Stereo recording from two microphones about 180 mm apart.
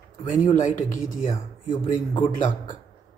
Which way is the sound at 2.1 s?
45° left (ahead or behind).